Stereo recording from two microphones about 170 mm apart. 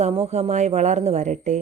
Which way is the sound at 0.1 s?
35° right (ahead or behind).